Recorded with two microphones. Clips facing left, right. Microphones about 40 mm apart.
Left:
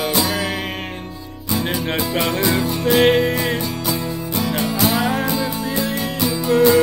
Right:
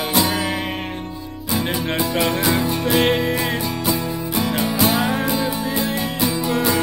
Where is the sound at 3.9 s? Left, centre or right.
Centre.